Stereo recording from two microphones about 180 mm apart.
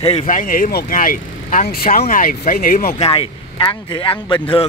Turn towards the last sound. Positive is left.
turn(degrees=30)  # may be behind; listen again after turning